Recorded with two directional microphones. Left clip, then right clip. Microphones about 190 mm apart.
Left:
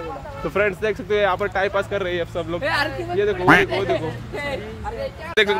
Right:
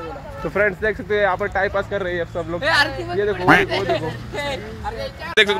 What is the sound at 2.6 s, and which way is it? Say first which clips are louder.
Speech: right 6 dB; 55° right (ahead or behind).